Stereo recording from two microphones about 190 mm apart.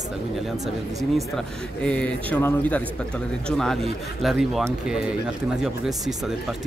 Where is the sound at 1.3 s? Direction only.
5° left (ahead or behind).